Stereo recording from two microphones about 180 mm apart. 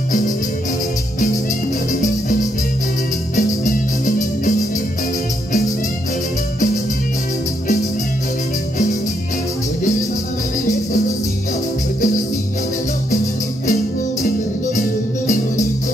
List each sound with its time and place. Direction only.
1.9 s music: 45° left (ahead or behind)
3.3 s music: 45° left (ahead or behind)
14.8 s music: 45° left (ahead or behind)